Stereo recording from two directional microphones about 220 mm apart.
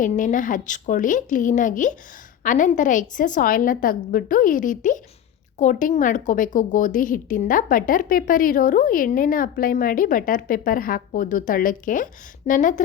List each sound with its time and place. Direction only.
0.0 s a woman's voice: 35° left (ahead or behind)